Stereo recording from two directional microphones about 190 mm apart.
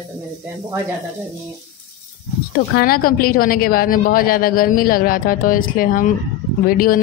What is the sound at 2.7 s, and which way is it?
Speech, 50° left (ahead or behind).